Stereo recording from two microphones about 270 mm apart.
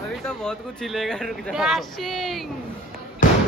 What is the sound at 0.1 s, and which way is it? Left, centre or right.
Speech, centre.